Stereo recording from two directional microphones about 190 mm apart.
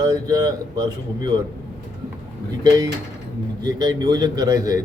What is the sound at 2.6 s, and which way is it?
A man's voice, 20° right (ahead or behind).